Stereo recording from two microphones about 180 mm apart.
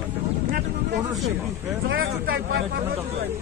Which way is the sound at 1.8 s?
90° right.